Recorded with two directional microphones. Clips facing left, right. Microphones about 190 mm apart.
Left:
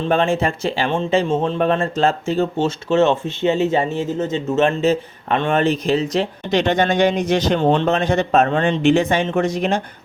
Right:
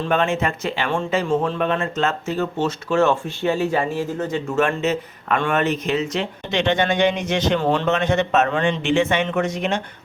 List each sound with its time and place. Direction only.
0.1 s speech: 30° left (ahead or behind)